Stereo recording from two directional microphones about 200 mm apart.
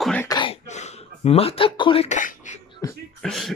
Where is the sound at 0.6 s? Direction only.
35° left (ahead or behind).